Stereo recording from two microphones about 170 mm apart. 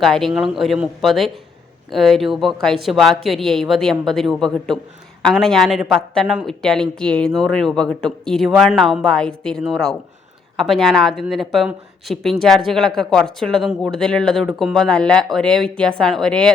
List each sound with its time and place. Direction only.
0.0 s speech: centre (ahead or behind)